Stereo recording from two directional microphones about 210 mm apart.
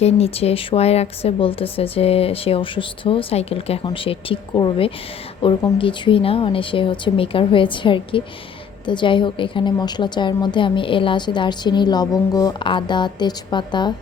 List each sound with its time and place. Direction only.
0.0 s a woman's voice: 30° left (ahead or behind)